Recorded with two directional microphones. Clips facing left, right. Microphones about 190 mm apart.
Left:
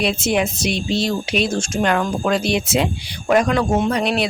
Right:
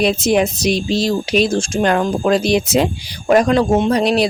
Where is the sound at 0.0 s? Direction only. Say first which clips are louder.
Right 4 dB; 40° right (ahead or behind).